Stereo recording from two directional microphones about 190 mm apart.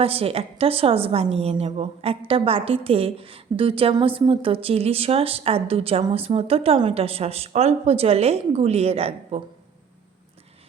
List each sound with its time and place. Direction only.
0.0 s a woman's voice: 30° right (ahead or behind)